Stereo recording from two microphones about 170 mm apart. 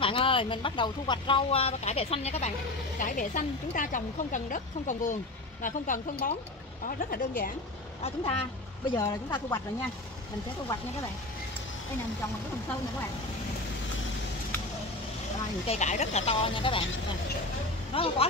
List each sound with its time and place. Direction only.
0.0 s speech: 30° left (ahead or behind)
3.0 s a woman's voice: 50° left (ahead or behind)
8.0 s speech: 35° left (ahead or behind)
8.9 s speech: 20° left (ahead or behind)
15.6 s speech: 40° left (ahead or behind)
17.9 s speech: 35° left (ahead or behind)